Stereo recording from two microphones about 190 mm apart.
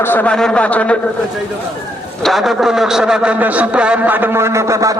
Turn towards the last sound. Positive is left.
turn(degrees=-15)  # may be behind; listen again after turning